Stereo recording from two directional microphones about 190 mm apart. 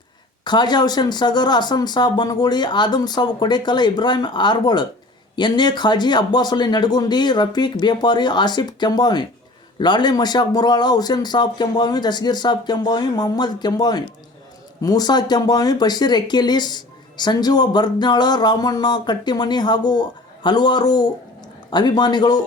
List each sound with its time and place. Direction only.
0.4 s speech: 20° left (ahead or behind)